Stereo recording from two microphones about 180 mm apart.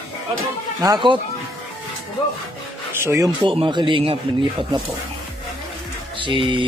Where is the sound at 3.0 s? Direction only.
15° right (ahead or behind).